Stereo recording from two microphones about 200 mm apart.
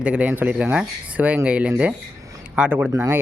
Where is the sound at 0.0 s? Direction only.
5° right (ahead or behind).